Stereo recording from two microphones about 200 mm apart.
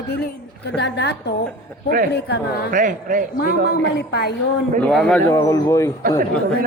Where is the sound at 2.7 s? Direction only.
40° right (ahead or behind).